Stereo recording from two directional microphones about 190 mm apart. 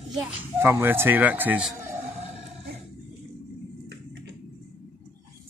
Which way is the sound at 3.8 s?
65° right (ahead or behind).